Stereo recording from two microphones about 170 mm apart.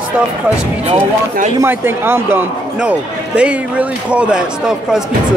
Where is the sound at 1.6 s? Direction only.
15° right (ahead or behind).